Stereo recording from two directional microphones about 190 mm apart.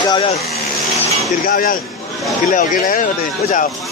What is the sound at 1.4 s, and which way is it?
Speech, 45° left (ahead or behind).